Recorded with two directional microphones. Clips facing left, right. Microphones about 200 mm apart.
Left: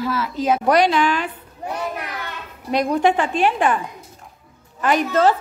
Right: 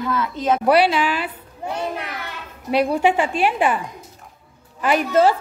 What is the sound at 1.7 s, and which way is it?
Children playing, 25° right (ahead or behind).